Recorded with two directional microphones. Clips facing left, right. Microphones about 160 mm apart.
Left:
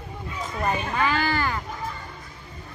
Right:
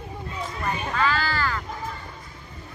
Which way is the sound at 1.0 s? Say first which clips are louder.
Right 1 dB; 20° left (ahead or behind).